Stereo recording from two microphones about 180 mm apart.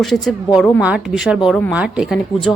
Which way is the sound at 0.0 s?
Centre (ahead or behind).